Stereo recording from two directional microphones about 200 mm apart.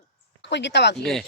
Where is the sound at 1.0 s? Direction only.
Centre (ahead or behind).